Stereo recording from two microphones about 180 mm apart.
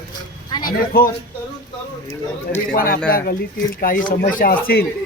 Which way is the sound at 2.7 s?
55° left (ahead or behind).